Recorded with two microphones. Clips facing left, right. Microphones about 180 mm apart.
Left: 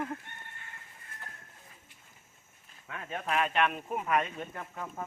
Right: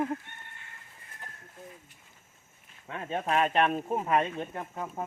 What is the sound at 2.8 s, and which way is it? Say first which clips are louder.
Speech: right 5 dB; 30° right (ahead or behind).